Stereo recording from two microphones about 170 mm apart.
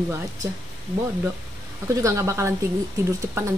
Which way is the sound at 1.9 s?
20° right (ahead or behind).